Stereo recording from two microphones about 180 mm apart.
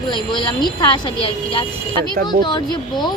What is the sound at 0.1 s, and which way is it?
A woman's voice, 25° left (ahead or behind).